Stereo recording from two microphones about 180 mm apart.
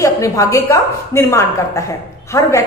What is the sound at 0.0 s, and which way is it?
A woman's voice, 20° left (ahead or behind).